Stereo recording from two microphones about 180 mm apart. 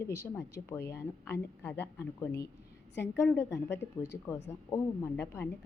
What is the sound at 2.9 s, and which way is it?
Speech, 75° left (ahead or behind).